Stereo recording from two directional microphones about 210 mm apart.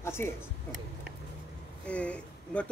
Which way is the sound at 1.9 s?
5° left (ahead or behind).